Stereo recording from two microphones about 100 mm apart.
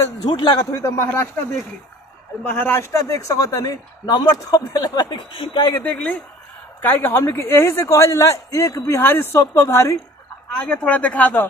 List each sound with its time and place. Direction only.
0.3 s a man's voice: 50° left (ahead or behind)
0.8 s speech: 30° left (ahead or behind)
2.5 s a man's voice: 20° left (ahead or behind); by 5.2 s 40° left (ahead or behind)
5.3 s speech: 65° left (ahead or behind)
5.7 s speech: 15° left (ahead or behind)
10.6 s speech: 15° left (ahead or behind)